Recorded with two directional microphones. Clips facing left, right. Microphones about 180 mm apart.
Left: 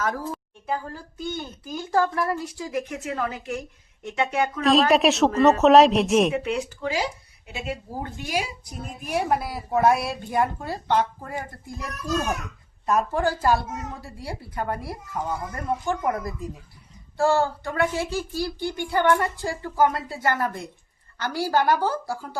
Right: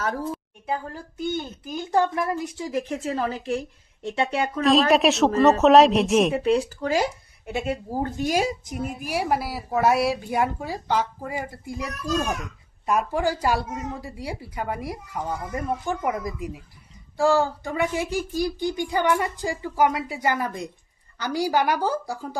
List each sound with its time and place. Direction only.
0.7 s a woman's voice: 20° right (ahead or behind)
4.6 s speech: centre (ahead or behind)
6.3 s speech: 35° right (ahead or behind)
6.9 s a woman's voice: 50° right (ahead or behind)
8.6 s speech: 10° right (ahead or behind)